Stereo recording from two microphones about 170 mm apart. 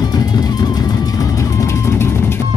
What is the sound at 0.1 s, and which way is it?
Music, 25° left (ahead or behind).